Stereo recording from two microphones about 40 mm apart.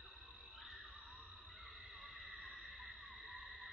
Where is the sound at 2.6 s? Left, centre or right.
Centre.